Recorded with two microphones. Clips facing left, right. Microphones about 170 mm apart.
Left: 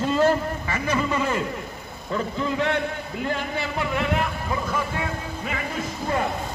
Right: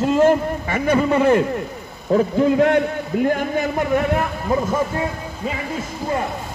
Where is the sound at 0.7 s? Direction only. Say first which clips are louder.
Right 8 dB; 55° right (ahead or behind).